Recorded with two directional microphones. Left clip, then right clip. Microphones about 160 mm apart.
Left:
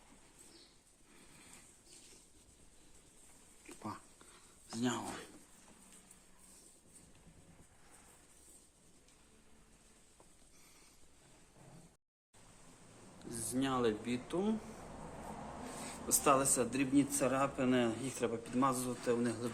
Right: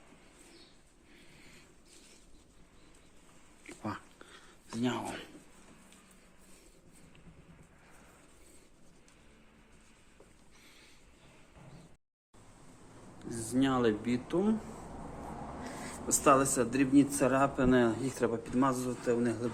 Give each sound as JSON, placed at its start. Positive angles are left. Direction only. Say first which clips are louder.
{"t": 4.8, "sound": "speech", "louder": "right 4 dB", "side_deg": 35}
{"t": 13.1, "sound": "speech", "louder": "right 7 dB", "side_deg": -10}
{"t": 15.8, "sound": "a man's voice", "louder": "right 5 dB", "side_deg": 0}